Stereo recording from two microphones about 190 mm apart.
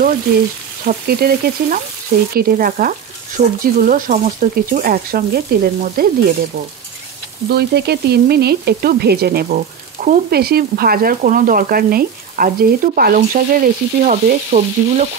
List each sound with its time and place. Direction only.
0.8 s frying: 55° right (ahead or behind)
7.4 s frying: 60° right (ahead or behind); by 15.0 s 40° right (ahead or behind)